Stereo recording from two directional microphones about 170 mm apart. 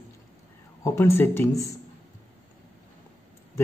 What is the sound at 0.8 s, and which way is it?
Speech, 15° left (ahead or behind).